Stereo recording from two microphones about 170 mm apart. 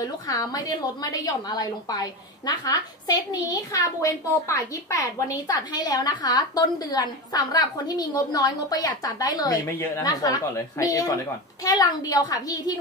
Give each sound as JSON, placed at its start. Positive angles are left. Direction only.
{"t": 0.0, "sound": "a woman's voice", "side_deg": 20}